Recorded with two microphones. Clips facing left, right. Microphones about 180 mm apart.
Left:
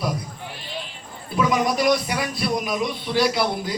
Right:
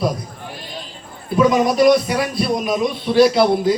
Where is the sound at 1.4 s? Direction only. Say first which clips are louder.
Right 7 dB; 25° right (ahead or behind).